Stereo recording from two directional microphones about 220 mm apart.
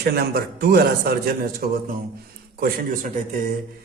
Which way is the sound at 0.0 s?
45° right (ahead or behind).